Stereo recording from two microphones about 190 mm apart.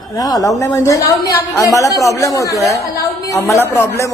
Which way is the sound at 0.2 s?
20° left (ahead or behind).